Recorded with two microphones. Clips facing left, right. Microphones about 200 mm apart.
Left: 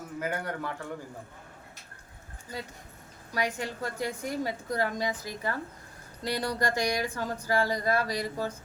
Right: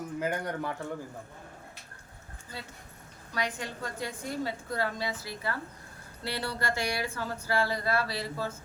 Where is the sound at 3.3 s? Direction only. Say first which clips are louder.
Left 3 dB; 10° left (ahead or behind).